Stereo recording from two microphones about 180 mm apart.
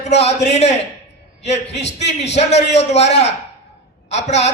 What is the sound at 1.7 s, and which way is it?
Speech, 35° left (ahead or behind).